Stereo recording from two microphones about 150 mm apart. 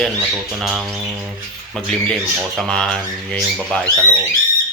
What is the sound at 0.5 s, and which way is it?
A man's voice, 5° right (ahead or behind).